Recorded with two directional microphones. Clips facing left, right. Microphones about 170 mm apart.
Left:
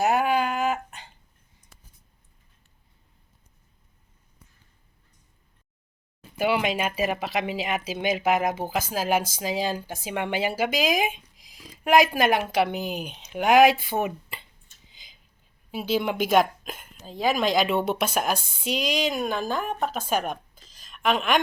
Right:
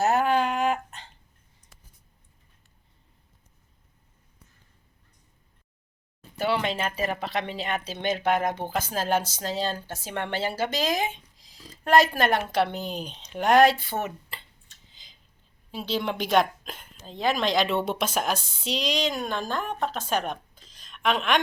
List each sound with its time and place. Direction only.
0.0 s a sound: 10° left (ahead or behind)
6.3 s speech: 10° left (ahead or behind)
15.7 s speech: 10° left (ahead or behind)
18.3 s speech: 55° left (ahead or behind)
18.8 s speech: 5° left (ahead or behind)